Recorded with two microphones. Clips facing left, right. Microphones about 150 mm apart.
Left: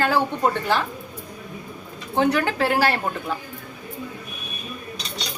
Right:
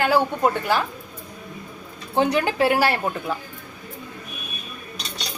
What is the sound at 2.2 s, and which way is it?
Speech, 20° right (ahead or behind).